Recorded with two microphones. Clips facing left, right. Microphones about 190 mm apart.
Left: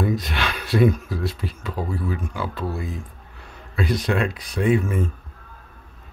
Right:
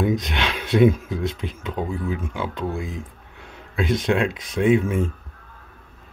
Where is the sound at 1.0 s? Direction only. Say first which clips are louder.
Right 1 dB; 20° right (ahead or behind).